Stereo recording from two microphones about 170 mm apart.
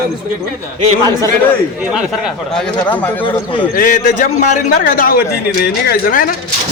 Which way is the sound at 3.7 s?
55° left (ahead or behind).